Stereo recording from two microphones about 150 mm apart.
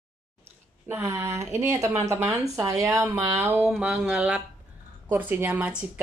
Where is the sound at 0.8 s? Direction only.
15° right (ahead or behind).